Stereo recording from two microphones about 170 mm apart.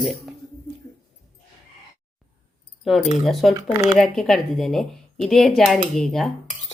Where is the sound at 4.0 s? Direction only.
Centre (ahead or behind).